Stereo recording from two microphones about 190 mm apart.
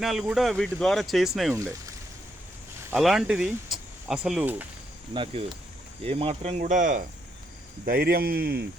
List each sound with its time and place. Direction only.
0.0 s speech: centre (ahead or behind)
1.5 s speech: 15° right (ahead or behind)
2.9 s speech: centre (ahead or behind)
5.1 s speech: 25° right (ahead or behind); by 7.0 s 40° right (ahead or behind)
7.9 s speech: 55° right (ahead or behind)